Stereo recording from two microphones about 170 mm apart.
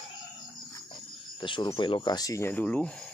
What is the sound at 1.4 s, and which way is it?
Speech, 30° left (ahead or behind).